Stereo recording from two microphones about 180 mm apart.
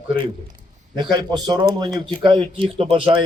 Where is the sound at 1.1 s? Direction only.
25° right (ahead or behind).